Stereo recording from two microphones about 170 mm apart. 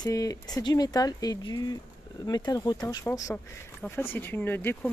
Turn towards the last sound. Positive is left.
turn(degrees=10)  # may be behind; listen again after turning